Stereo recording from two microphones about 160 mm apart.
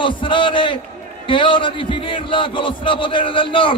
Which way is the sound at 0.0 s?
30° left (ahead or behind).